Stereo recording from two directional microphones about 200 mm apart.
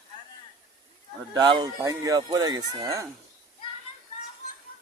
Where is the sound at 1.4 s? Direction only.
20° right (ahead or behind).